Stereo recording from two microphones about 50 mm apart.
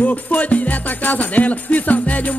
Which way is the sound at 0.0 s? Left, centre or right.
Left.